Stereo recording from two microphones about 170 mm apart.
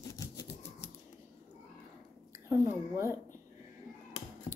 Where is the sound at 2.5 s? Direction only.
15° right (ahead or behind).